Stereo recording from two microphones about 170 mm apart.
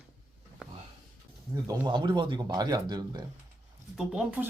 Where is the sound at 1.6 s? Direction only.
25° right (ahead or behind).